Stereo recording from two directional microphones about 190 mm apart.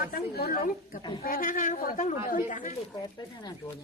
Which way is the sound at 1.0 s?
25° left (ahead or behind).